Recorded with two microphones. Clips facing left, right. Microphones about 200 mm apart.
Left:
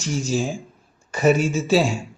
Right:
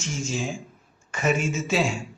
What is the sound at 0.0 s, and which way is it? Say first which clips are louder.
A man's voice: left 6 dB; 35° left (ahead or behind).